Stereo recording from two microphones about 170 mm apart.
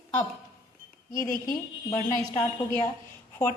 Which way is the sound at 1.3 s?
55° left (ahead or behind).